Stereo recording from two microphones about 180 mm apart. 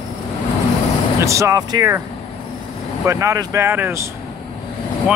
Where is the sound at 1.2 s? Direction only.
15° right (ahead or behind).